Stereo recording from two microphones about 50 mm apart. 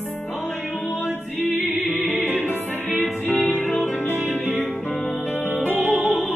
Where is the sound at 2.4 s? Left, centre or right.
Left.